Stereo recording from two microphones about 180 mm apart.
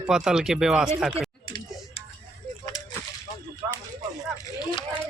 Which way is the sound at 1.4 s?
25° left (ahead or behind).